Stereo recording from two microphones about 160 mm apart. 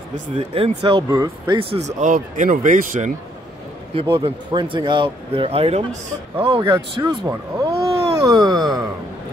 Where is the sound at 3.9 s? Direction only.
30° right (ahead or behind).